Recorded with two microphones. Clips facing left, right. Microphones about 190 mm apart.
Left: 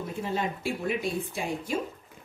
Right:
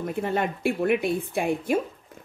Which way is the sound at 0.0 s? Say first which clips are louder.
Right 5 dB; 60° right (ahead or behind).